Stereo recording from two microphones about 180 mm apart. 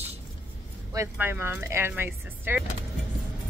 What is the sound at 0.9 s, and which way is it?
Speech, 15° right (ahead or behind).